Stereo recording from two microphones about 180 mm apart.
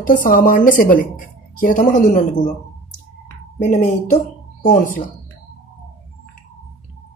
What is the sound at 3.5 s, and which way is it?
A woman's voice, 45° left (ahead or behind).